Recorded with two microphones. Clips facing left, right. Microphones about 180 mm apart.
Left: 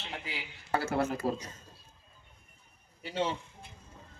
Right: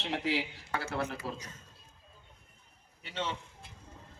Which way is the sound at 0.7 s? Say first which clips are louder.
Left 6 dB; 40° left (ahead or behind).